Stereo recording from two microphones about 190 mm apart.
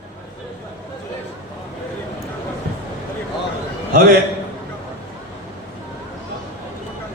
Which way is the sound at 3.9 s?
50° right (ahead or behind).